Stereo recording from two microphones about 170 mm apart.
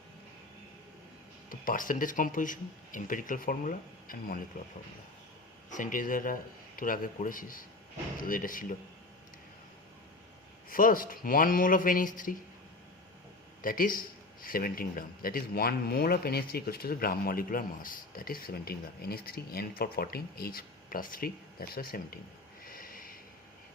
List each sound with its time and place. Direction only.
1.5 s speech: 55° left (ahead or behind)
5.7 s speech: 50° left (ahead or behind)
10.7 s speech: 55° left (ahead or behind)
13.6 s speech: 55° left (ahead or behind)
22.6 s snort: 55° left (ahead or behind)